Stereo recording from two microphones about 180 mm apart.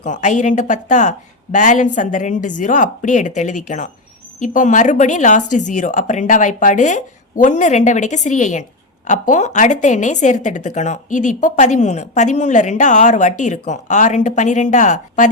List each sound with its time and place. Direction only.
0.0 s a woman's voice: 40° left (ahead or behind)